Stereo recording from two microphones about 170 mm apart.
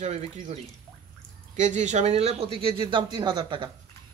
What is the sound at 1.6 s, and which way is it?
Speech, 45° right (ahead or behind).